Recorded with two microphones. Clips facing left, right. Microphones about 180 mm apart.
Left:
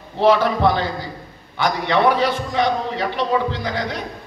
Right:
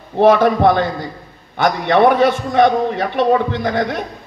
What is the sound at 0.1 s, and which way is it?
A man's voice, 50° right (ahead or behind).